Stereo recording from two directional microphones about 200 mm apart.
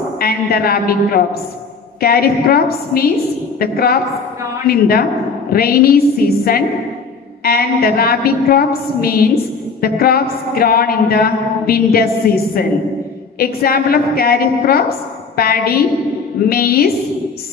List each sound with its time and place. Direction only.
0.2 s a woman's voice: 50° left (ahead or behind)
13.4 s a woman's voice: 50° left (ahead or behind)